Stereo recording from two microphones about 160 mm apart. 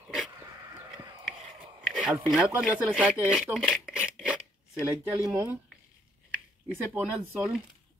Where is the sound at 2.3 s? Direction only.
5° right (ahead or behind).